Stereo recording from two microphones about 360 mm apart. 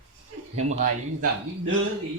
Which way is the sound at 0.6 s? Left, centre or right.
Centre.